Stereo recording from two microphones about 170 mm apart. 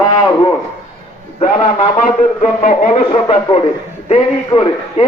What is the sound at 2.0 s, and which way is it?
Speech, 45° left (ahead or behind).